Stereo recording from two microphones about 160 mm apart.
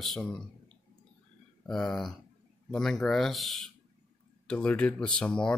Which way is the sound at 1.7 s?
5° left (ahead or behind).